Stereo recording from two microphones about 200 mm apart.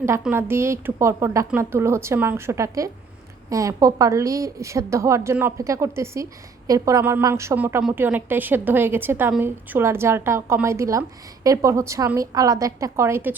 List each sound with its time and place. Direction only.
0.0 s a woman's voice: 10° right (ahead or behind)